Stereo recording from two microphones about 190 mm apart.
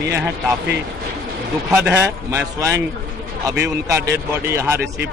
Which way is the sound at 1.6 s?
10° right (ahead or behind).